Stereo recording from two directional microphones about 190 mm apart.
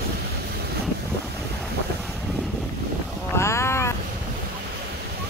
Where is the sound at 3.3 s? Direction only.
15° left (ahead or behind).